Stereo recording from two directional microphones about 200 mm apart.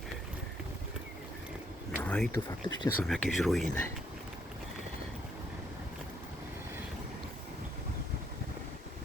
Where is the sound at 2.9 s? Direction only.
5° left (ahead or behind).